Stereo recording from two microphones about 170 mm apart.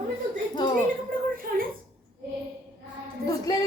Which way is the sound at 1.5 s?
65° right (ahead or behind).